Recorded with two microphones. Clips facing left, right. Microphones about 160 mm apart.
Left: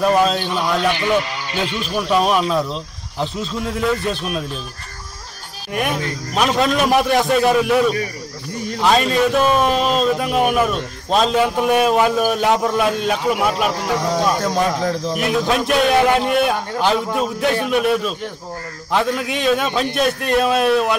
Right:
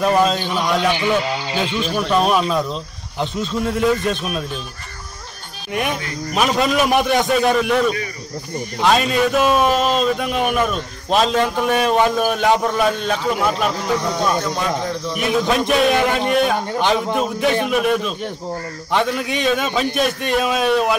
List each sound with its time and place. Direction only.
0.0 s speech: centre (ahead or behind)
0.4 s speech: 15° right (ahead or behind)
2.0 s speech: 5° left (ahead or behind)
5.7 s speech: centre (ahead or behind)
13.7 s speech: 45° left (ahead or behind)
15.1 s speech: centre (ahead or behind)